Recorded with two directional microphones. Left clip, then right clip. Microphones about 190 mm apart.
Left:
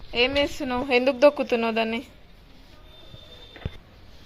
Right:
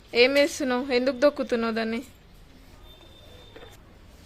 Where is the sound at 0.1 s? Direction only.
25° right (ahead or behind).